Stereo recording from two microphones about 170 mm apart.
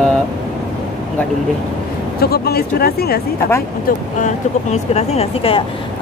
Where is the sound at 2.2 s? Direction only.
70° left (ahead or behind).